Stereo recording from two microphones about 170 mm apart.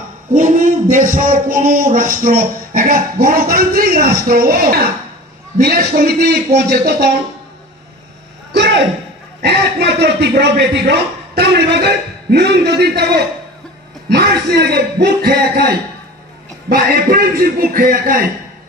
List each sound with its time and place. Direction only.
0.3 s a man's voice: 50° right (ahead or behind); by 7.2 s 70° right (ahead or behind)
8.5 s a sound: 90° right
9.4 s a man's voice: 75° right (ahead or behind); by 18.2 s 60° right (ahead or behind)